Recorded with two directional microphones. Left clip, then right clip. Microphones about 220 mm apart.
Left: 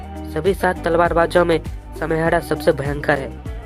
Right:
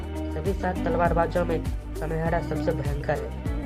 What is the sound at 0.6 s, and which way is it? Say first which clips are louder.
Speech: left 6 dB; 40° left (ahead or behind).